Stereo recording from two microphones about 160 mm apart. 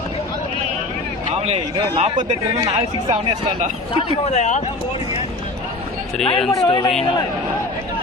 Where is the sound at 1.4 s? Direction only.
40° right (ahead or behind).